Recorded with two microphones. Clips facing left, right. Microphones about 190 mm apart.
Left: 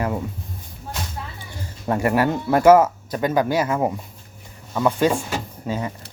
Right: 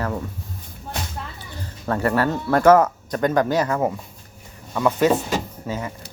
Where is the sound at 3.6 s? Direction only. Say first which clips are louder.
Even; 20° left (ahead or behind).